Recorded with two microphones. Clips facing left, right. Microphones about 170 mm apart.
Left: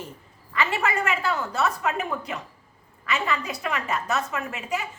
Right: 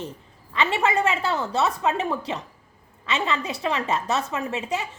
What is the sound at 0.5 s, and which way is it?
A woman's voice, 20° right (ahead or behind).